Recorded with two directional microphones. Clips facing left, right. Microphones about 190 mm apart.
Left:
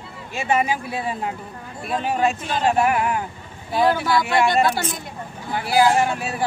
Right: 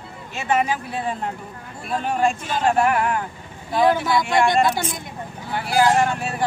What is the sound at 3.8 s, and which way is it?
Speech, 20° right (ahead or behind).